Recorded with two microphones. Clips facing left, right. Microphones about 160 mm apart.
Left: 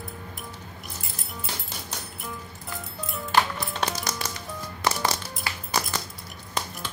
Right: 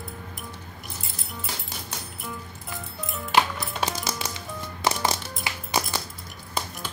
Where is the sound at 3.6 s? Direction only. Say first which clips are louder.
Even; 10° right (ahead or behind).